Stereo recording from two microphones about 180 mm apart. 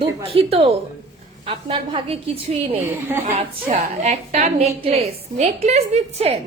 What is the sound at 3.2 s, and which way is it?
A woman's voice, 40° right (ahead or behind).